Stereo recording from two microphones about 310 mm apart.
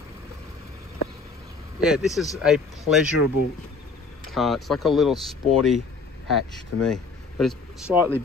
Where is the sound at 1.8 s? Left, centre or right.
Centre.